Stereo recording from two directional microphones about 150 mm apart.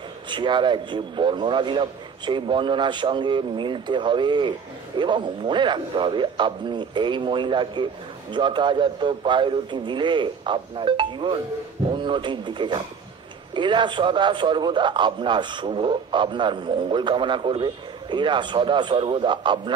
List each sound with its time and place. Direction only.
0.3 s a man's voice: 30° right (ahead or behind)